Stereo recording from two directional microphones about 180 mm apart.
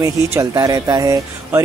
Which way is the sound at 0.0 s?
15° right (ahead or behind).